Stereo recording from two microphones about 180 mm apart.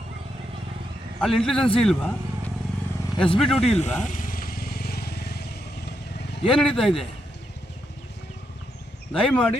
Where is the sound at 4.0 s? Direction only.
45° left (ahead or behind); by 5.4 s 60° left (ahead or behind).